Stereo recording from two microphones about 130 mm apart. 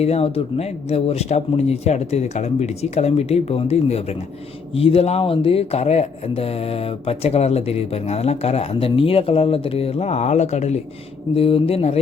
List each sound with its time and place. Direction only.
0.0 s speech: 50° left (ahead or behind)
11.3 s speech: 45° left (ahead or behind)